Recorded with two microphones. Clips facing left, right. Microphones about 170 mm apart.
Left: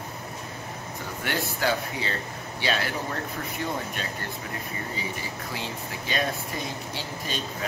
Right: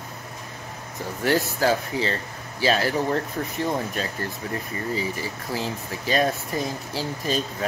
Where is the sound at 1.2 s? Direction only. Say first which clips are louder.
Right 6 dB; 35° right (ahead or behind).